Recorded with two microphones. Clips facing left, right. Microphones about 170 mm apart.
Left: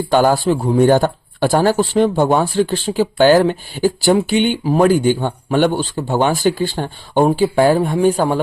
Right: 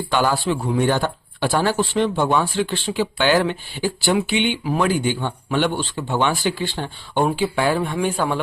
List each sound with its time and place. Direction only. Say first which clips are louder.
0.1 s speech: left 6 dB; 45° left (ahead or behind)